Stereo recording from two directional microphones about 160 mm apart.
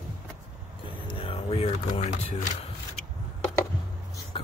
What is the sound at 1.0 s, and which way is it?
Music, 35° left (ahead or behind).